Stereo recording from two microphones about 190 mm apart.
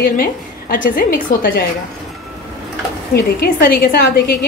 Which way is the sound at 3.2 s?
55° left (ahead or behind).